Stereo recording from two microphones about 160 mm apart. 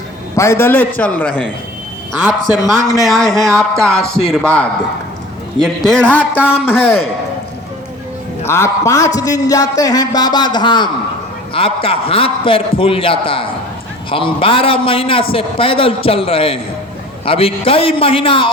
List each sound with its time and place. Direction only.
0.3 s a man's voice: 15° left (ahead or behind)
2.7 s speech: 20° left (ahead or behind)
3.0 s a man's voice: centre (ahead or behind)
8.4 s a man's voice: 15° left (ahead or behind); by 18.5 s 35° left (ahead or behind)